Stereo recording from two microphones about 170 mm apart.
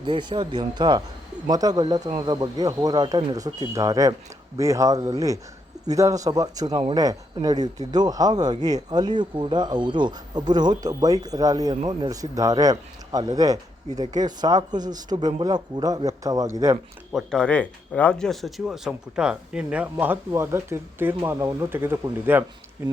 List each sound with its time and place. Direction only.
0.0 s a man's voice: 25° right (ahead or behind)
17.1 s speech: centre (ahead or behind)